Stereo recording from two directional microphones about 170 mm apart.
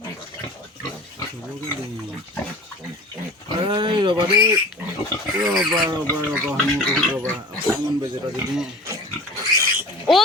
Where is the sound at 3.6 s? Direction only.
30° right (ahead or behind).